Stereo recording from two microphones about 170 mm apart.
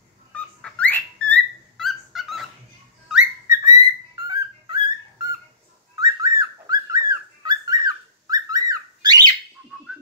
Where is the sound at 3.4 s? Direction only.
20° right (ahead or behind).